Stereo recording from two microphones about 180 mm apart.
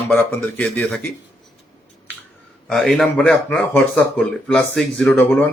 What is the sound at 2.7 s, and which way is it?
Speech, centre (ahead or behind).